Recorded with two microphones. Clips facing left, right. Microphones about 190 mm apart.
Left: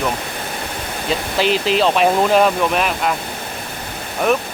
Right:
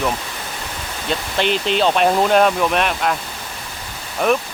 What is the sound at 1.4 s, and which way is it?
Speech, centre (ahead or behind).